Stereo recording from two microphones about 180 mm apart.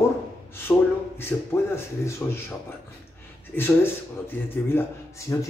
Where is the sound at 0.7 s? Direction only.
10° left (ahead or behind).